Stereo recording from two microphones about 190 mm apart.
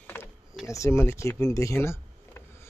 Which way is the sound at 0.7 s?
15° left (ahead or behind).